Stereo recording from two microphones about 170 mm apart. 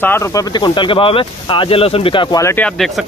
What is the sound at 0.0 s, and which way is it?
Speech, 15° left (ahead or behind).